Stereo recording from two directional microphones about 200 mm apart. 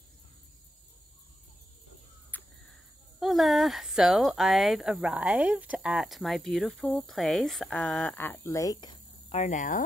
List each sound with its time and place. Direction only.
2.3 s cricket: 10° left (ahead or behind)
3.2 s speech: centre (ahead or behind); by 8.9 s 15° left (ahead or behind)
9.3 s speech: 35° left (ahead or behind)